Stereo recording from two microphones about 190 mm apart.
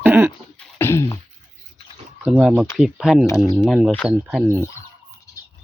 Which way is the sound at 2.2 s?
5° right (ahead or behind).